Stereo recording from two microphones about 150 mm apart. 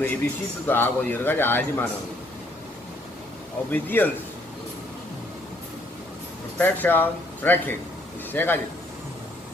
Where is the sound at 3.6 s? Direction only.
10° left (ahead or behind).